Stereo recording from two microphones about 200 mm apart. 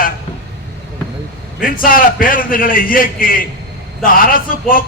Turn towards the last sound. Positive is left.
turn(degrees=45)  # may be behind; listen again after turning